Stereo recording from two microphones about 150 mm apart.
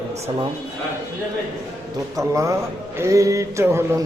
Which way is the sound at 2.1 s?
20° right (ahead or behind).